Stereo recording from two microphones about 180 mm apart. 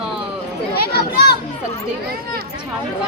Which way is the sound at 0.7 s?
60° left (ahead or behind).